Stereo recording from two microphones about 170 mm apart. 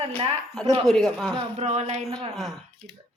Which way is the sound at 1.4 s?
40° right (ahead or behind).